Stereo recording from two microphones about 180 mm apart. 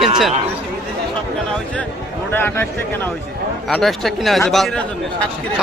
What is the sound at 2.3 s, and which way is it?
Speech, 10° left (ahead or behind).